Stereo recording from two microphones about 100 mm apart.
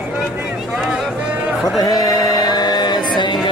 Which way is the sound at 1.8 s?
40° left (ahead or behind).